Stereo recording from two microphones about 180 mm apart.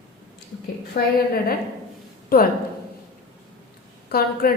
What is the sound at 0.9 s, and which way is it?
Speech, 60° left (ahead or behind).